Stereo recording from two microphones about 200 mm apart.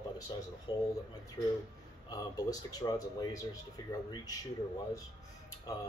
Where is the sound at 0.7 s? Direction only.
20° left (ahead or behind).